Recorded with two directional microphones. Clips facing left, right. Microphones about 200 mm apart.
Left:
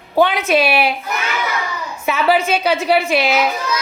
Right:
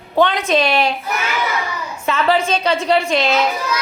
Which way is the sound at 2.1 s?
10° left (ahead or behind).